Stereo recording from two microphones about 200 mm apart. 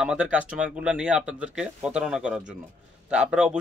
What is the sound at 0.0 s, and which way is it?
Speech, 5° right (ahead or behind).